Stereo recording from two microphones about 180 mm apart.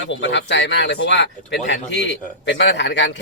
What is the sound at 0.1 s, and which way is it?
Speech, 75° left (ahead or behind).